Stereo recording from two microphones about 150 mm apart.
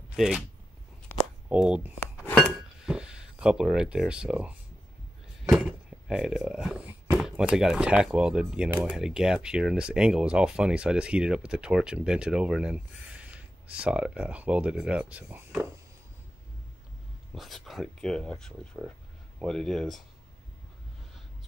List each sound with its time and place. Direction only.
0.1 s speech: 5° right (ahead or behind)
1.5 s speech: 5° right (ahead or behind)
2.3 s a sound: centre (ahead or behind)
5.5 s speech: 5° right (ahead or behind)
17.3 s speech: centre (ahead or behind)